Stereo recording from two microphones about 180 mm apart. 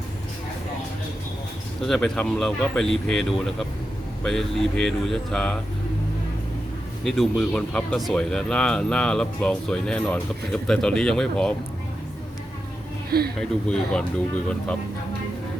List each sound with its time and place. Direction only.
1.8 s speech: centre (ahead or behind)
7.0 s speech: centre (ahead or behind)
13.1 s speech: 60° right (ahead or behind)
13.4 s speech: 5° left (ahead or behind)